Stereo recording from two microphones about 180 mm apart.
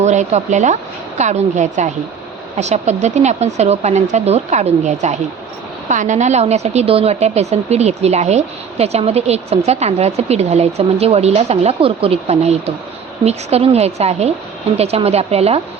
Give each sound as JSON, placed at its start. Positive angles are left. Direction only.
{"t": 0.0, "sound": "a woman's voice", "side_deg": -40}